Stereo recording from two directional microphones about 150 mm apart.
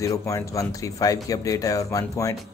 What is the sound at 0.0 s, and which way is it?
Speech, 20° left (ahead or behind).